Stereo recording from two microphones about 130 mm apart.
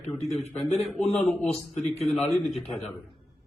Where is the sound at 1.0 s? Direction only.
50° left (ahead or behind).